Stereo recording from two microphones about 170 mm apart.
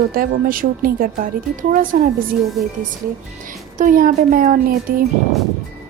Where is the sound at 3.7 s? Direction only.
50° right (ahead or behind).